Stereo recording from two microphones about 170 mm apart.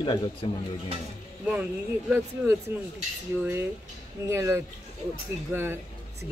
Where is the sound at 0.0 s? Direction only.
30° left (ahead or behind).